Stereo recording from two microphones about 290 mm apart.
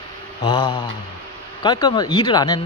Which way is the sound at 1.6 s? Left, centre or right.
Centre.